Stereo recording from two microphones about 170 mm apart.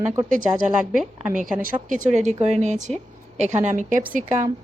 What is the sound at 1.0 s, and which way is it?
Speech, 5° right (ahead or behind).